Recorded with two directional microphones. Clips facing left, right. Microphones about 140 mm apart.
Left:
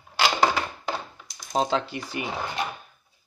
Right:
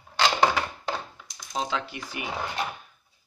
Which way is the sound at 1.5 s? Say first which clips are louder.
Left 6 dB; 35° left (ahead or behind).